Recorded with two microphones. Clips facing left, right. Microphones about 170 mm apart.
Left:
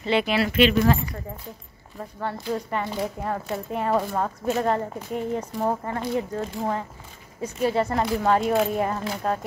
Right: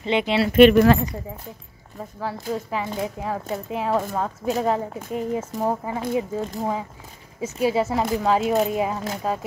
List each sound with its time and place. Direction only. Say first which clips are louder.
0.0 s speech: right 1 dB; 20° right (ahead or behind)
0.5 s speech: right 8 dB; 55° right (ahead or behind)
2.1 s speech: even; centre (ahead or behind)